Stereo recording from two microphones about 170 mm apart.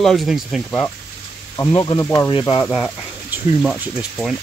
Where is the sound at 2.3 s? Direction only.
30° left (ahead or behind).